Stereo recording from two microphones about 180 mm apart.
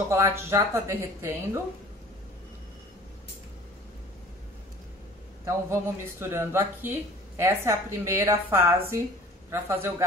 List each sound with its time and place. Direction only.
0.1 s speech: 15° right (ahead or behind)
5.4 s speech: 15° right (ahead or behind)